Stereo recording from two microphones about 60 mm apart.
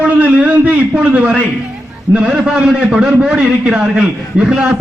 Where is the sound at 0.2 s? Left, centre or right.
Right.